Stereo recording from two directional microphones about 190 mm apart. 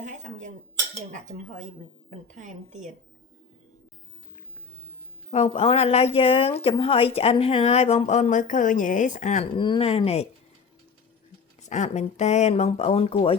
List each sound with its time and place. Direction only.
0.0 s dishes: 40° right (ahead or behind)
1.1 s a woman's voice: 40° right (ahead or behind)
5.3 s speech: 35° left (ahead or behind)
9.6 s speech: 25° left (ahead or behind)
11.6 s speech: 35° left (ahead or behind)